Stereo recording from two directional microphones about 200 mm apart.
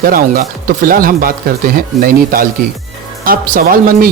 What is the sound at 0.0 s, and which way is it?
Speech, 45° right (ahead or behind).